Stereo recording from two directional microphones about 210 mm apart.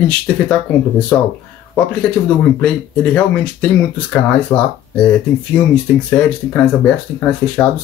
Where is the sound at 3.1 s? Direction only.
5° left (ahead or behind).